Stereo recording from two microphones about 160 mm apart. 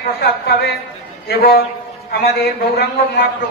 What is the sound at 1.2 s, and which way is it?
Speech, 70° left (ahead or behind).